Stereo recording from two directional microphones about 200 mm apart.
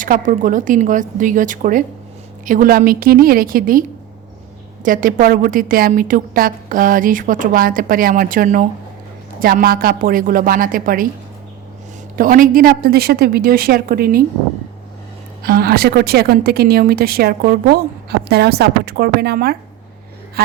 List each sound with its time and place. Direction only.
0.0 s a woman's voice: 40° right (ahead or behind)
12.1 s a woman's voice: 45° right (ahead or behind)
15.4 s a woman's voice: 50° right (ahead or behind)